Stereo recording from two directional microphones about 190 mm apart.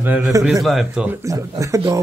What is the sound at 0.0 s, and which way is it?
Speech, 15° right (ahead or behind).